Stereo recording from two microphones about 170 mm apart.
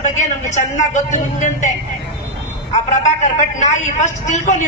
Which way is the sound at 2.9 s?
45° left (ahead or behind).